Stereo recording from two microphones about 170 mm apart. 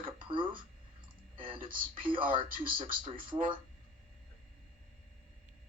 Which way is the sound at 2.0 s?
30° right (ahead or behind).